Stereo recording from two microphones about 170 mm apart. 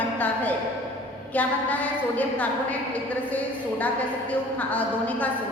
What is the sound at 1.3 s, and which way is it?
A woman's voice, 10° left (ahead or behind).